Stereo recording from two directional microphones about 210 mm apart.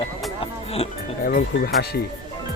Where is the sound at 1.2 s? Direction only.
45° left (ahead or behind).